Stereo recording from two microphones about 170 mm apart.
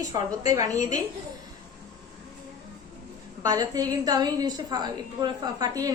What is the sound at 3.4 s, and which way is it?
A woman's voice, 20° right (ahead or behind).